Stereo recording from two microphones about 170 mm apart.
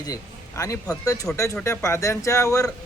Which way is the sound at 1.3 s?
20° left (ahead or behind).